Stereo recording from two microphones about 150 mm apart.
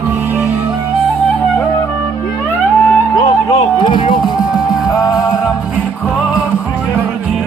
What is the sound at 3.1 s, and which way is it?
Music, 30° left (ahead or behind).